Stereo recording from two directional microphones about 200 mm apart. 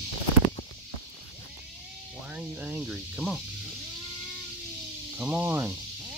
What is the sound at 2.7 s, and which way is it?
Speech, 5° right (ahead or behind).